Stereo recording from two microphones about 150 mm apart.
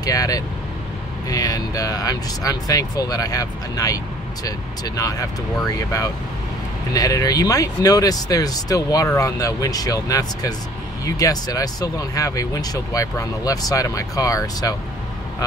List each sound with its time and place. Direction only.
0.0 s speech: 25° left (ahead or behind)